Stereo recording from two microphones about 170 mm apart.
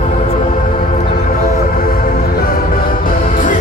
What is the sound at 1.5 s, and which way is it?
Music, 60° left (ahead or behind).